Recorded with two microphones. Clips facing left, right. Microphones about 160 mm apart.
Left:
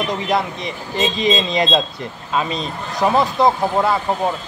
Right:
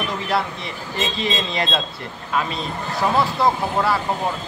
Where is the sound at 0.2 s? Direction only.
20° left (ahead or behind).